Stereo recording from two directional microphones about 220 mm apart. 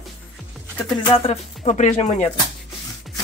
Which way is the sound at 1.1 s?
25° left (ahead or behind).